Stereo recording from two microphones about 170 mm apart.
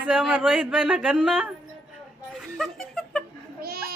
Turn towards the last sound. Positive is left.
turn(degrees=-60)  # may be behind; listen again after turning